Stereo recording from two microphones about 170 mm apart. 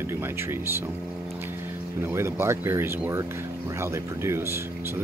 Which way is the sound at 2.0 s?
15° right (ahead or behind).